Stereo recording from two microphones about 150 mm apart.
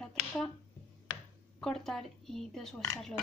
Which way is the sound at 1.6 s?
5° left (ahead or behind).